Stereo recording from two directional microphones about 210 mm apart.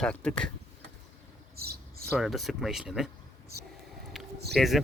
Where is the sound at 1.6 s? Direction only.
45° right (ahead or behind).